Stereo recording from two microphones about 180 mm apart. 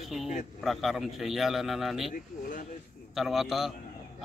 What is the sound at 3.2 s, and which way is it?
Speech, centre (ahead or behind).